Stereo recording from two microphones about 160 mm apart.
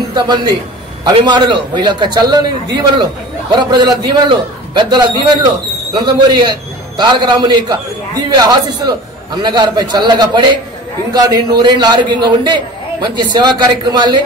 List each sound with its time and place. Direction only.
0.1 s a man's voice: 25° right (ahead or behind)